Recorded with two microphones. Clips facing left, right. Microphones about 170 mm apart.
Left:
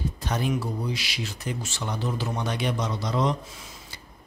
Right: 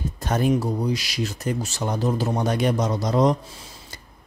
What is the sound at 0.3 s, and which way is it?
Speech, 45° right (ahead or behind).